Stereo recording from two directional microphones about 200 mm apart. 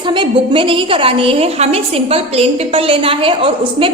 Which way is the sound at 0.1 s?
25° right (ahead or behind).